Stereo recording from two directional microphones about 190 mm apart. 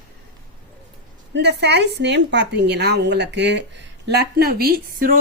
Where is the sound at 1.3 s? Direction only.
65° right (ahead or behind).